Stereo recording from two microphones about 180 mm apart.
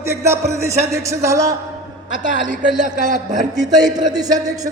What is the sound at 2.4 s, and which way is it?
Speech, 45° right (ahead or behind).